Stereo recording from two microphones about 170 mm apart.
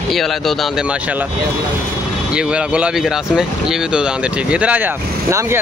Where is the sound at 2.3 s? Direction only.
5° right (ahead or behind).